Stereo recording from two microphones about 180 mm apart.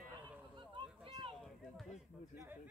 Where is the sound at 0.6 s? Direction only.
25° right (ahead or behind).